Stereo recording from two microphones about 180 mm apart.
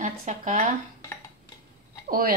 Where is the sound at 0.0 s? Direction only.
45° right (ahead or behind).